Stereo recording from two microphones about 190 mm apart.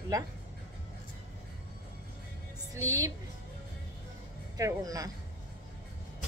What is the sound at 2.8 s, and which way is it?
Speech, 15° right (ahead or behind).